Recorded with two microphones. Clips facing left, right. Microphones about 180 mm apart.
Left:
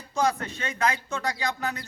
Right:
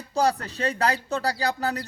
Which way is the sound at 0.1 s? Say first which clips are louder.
Right 2 dB; 35° right (ahead or behind).